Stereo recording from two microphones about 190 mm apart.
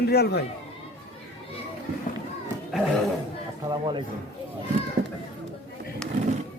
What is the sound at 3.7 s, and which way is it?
Speech, 25° right (ahead or behind).